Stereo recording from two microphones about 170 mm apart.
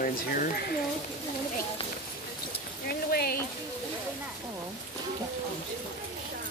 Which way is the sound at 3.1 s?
65° left (ahead or behind).